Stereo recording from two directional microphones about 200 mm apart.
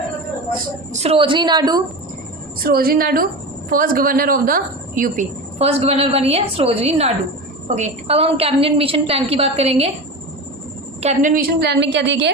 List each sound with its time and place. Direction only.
0.9 s a woman's voice: 30° right (ahead or behind)
2.6 s a woman's voice: 50° right (ahead or behind); by 9.9 s 30° right (ahead or behind)
11.0 s a woman's voice: 35° right (ahead or behind); by 12.3 s 60° right (ahead or behind)